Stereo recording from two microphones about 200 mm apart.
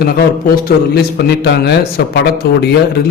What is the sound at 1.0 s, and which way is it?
A man's voice, 55° left (ahead or behind).